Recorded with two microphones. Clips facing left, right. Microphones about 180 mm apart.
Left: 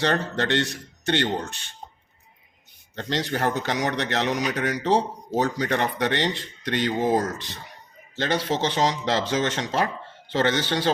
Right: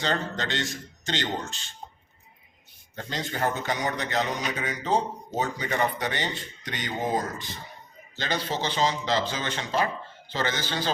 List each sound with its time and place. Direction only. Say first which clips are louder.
0.0 s speech: left 5 dB; 65° left (ahead or behind)
2.9 s speech: left 6 dB; 70° left (ahead or behind)